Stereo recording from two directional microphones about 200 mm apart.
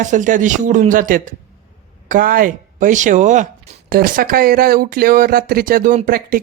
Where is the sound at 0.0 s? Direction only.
40° right (ahead or behind).